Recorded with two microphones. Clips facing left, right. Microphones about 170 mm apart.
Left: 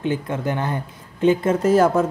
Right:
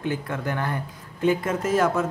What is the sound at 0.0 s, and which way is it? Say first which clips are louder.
Speech: left 4 dB; 20° left (ahead or behind).